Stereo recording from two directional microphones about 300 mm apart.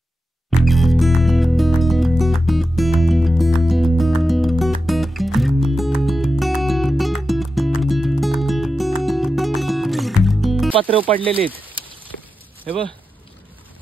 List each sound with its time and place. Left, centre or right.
0.5 s music: centre
10.7 s speech: centre
11.6 s a sound: centre